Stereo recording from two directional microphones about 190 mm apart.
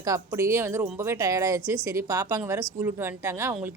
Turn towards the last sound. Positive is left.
turn(degrees=-10)  # may be behind; listen again after turning